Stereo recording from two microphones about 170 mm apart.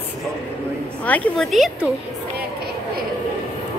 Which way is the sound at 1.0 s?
10° left (ahead or behind).